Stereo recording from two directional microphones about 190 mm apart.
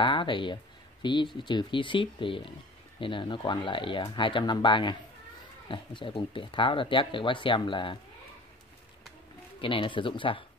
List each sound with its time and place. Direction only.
0.0 s speech: 25° left (ahead or behind)
9.6 s speech: 25° left (ahead or behind)